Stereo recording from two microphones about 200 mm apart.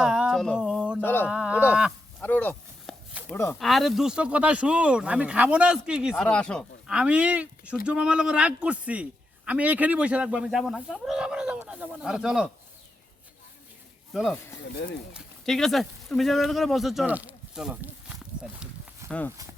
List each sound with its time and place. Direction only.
0.0 s a sound: 5° right (ahead or behind)
1.0 s speech: 10° left (ahead or behind)
1.3 s speech: 5° right (ahead or behind)
2.2 s a sound: 10° left (ahead or behind)
3.3 s speech: 15° left (ahead or behind)
3.6 s speech: centre (ahead or behind)
14.1 s speech: centre (ahead or behind)